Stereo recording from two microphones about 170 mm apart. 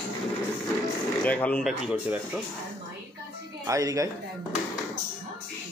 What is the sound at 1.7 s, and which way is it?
Speech, 10° right (ahead or behind).